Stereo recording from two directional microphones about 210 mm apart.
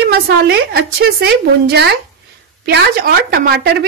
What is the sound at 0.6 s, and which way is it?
A woman's voice, 45° right (ahead or behind).